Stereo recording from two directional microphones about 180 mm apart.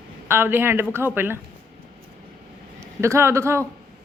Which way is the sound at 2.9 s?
15° right (ahead or behind).